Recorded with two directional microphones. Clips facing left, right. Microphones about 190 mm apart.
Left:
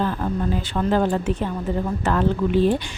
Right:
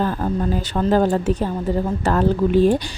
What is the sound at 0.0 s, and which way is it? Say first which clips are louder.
Speech: right 2 dB; 40° right (ahead or behind).